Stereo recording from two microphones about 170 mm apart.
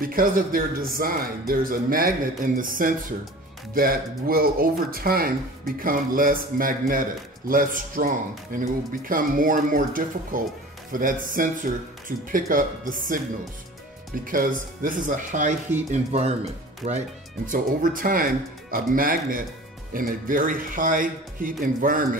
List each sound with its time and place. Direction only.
0.0 s speech: 55° right (ahead or behind)
14.2 s speech: 55° right (ahead or behind); by 17.0 s 40° right (ahead or behind)
17.5 s speech: 55° right (ahead or behind)